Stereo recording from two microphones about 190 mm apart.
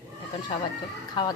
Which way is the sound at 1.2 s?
25° left (ahead or behind).